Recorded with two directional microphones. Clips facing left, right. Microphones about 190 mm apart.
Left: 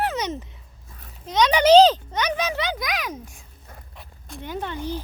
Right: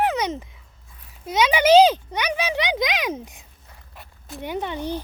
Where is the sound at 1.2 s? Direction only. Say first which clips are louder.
Left 1 dB; 10° right (ahead or behind).